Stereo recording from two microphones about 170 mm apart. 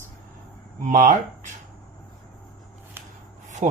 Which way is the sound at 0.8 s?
45° right (ahead or behind).